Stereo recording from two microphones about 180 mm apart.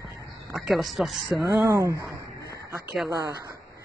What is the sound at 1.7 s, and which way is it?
Speech, 15° right (ahead or behind).